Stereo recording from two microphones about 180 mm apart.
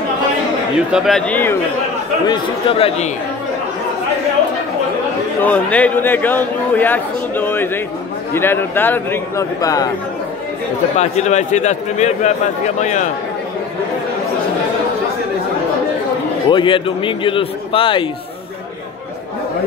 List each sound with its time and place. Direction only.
0.9 s a man's voice: centre (ahead or behind)
2.2 s a man's voice: 30° left (ahead or behind)
5.4 s a man's voice: 10° left (ahead or behind)
11.0 s a man's voice: 40° left (ahead or behind)
16.4 s a man's voice: 25° left (ahead or behind)